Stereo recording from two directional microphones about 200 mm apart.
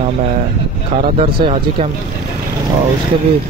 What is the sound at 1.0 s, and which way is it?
Speech, 25° right (ahead or behind).